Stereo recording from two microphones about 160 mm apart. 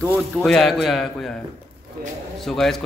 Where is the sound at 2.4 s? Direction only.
Centre (ahead or behind).